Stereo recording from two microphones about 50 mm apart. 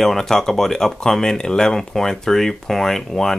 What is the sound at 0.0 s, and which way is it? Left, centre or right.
Speech, centre.